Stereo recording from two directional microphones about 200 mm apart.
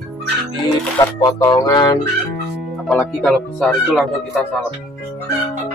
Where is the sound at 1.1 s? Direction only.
20° left (ahead or behind).